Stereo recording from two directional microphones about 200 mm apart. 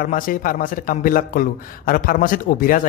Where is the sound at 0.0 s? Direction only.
45° left (ahead or behind).